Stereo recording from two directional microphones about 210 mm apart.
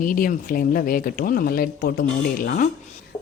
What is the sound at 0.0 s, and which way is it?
Speech, 40° left (ahead or behind).